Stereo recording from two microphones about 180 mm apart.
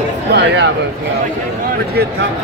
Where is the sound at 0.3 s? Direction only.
70° right (ahead or behind).